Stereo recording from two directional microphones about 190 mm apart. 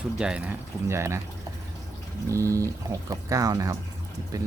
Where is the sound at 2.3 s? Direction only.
15° right (ahead or behind).